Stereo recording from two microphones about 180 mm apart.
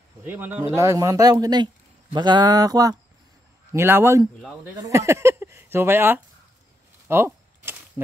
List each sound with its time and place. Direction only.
0.2 s speech: 10° right (ahead or behind)
7.1 s keys jangling: 15° right (ahead or behind)